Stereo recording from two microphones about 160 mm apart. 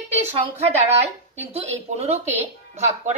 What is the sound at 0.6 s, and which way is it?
A woman's voice, 40° right (ahead or behind).